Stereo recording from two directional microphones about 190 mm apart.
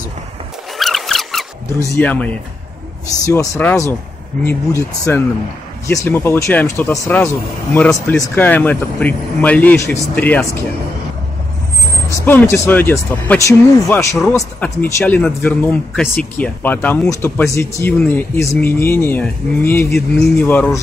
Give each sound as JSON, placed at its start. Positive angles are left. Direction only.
{"t": 0.7, "sound": "a sound", "side_deg": 0}
{"t": 1.9, "sound": "speech", "side_deg": 10}
{"t": 3.3, "sound": "speech", "side_deg": 15}
{"t": 12.1, "sound": "speech", "side_deg": 15}